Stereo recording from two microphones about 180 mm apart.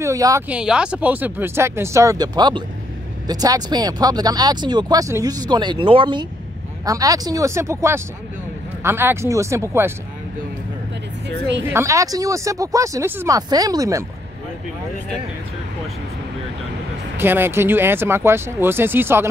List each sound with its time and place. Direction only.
0.0 s speech: 20° right (ahead or behind)
0.5 s speech: 5° right (ahead or behind)
11.6 s speech: 15° right (ahead or behind)
17.2 s speech: 10° right (ahead or behind)